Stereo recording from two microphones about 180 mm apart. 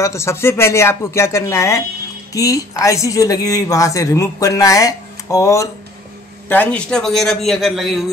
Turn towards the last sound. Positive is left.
turn(degrees=0)  # may be behind; listen again after turning